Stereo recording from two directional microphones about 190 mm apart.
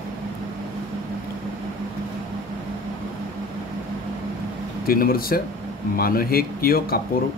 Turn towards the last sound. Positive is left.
turn(degrees=50)  # may be behind; listen again after turning